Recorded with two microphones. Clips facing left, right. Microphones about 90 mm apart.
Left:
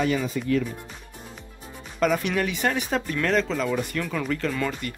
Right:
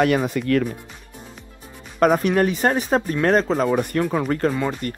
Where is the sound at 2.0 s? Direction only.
45° right (ahead or behind).